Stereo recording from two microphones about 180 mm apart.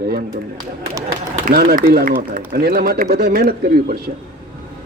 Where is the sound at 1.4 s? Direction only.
55° right (ahead or behind).